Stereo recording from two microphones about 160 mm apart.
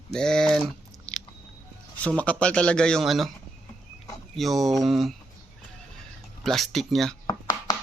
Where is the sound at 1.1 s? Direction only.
5° left (ahead or behind).